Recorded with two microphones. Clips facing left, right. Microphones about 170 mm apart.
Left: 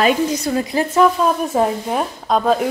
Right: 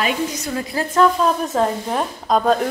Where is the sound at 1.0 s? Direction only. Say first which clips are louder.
Left 1 dB; 10° left (ahead or behind).